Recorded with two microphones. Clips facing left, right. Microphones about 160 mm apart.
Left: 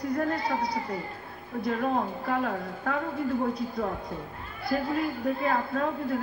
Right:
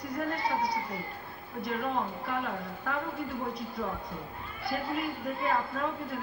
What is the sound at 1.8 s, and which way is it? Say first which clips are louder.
Speech: left 2 dB; 45° left (ahead or behind).